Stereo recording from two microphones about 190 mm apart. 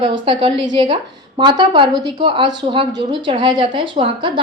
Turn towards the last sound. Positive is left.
turn(degrees=-25)  # may be behind; listen again after turning